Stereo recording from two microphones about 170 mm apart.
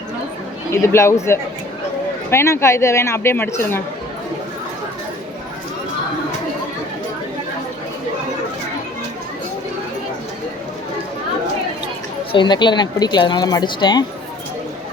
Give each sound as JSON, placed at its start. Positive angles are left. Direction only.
{"t": 0.7, "sound": "speech", "side_deg": 15}
{"t": 12.3, "sound": "speech", "side_deg": 25}